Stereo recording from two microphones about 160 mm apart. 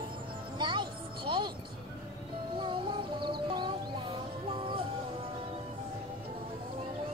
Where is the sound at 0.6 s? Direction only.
30° right (ahead or behind).